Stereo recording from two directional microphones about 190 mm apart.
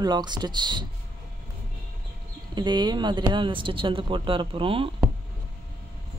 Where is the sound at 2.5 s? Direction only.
25° right (ahead or behind).